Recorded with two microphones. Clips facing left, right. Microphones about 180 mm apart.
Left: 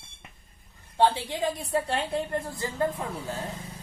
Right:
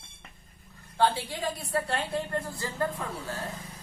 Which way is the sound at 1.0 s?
20° left (ahead or behind).